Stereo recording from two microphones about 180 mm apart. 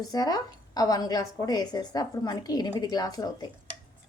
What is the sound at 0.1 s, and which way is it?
A woman's voice, 20° left (ahead or behind).